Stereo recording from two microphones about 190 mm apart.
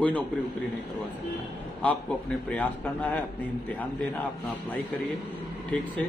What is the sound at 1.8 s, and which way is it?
A man's voice, 10° left (ahead or behind).